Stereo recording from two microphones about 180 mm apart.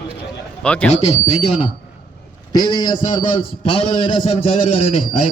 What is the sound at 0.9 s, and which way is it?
Speech, 35° left (ahead or behind).